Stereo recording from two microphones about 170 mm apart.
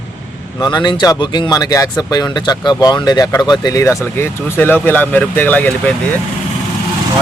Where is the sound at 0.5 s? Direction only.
25° left (ahead or behind); by 5.9 s 10° left (ahead or behind).